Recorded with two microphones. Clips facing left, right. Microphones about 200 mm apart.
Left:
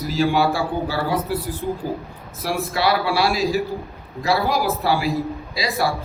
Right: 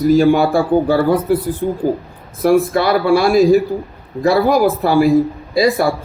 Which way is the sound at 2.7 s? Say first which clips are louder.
Right 7 dB; 50° right (ahead or behind).